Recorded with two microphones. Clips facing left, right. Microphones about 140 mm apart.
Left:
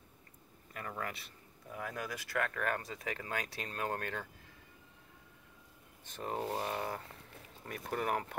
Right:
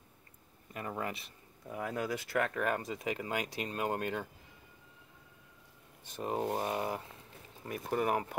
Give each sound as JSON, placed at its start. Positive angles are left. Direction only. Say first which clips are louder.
{"t": 0.7, "sound": "speech", "louder": "right 3 dB", "side_deg": -20}
{"t": 6.1, "sound": "speech", "louder": "right 3 dB", "side_deg": -20}